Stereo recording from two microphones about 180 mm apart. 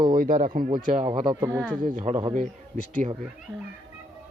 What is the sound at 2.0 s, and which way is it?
Speech, 35° right (ahead or behind).